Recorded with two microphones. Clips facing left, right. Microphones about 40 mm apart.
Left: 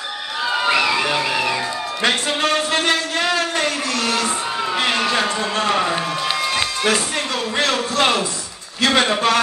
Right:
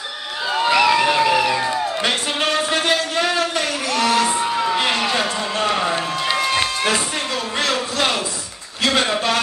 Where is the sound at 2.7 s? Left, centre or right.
Left.